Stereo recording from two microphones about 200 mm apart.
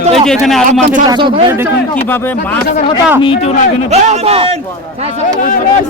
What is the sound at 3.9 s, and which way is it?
Speech, 30° right (ahead or behind).